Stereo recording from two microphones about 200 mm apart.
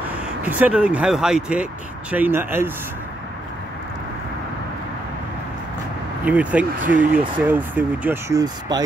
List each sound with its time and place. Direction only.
0.4 s speech: 5° right (ahead or behind)
6.2 s speech: 5° right (ahead or behind)
6.8 s speech: 40° right (ahead or behind)
7.3 s speech: 10° right (ahead or behind)